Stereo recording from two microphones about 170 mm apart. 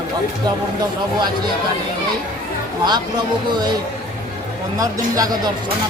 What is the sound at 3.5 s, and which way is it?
Speech, 25° right (ahead or behind).